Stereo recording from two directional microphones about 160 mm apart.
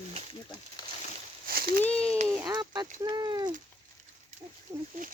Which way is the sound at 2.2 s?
15° right (ahead or behind).